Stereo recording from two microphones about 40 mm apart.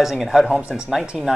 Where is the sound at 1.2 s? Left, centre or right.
Centre.